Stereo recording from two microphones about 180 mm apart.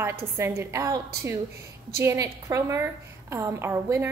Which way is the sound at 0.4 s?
15° right (ahead or behind).